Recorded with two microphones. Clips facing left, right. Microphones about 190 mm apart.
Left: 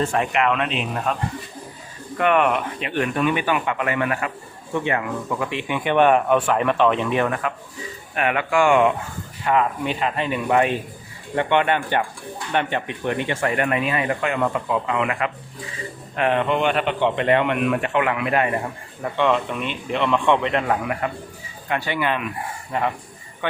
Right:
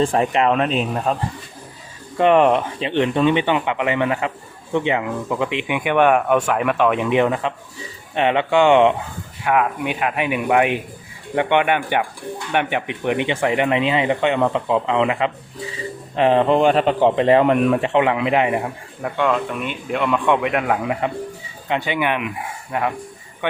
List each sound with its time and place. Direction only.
0.0 s speech: 30° right (ahead or behind)
2.1 s speech: 30° right (ahead or behind)
9.4 s speech: 10° right (ahead or behind)
19.0 s speech: centre (ahead or behind)
20.8 s speech: 20° right (ahead or behind)
23.4 s speech: 15° right (ahead or behind)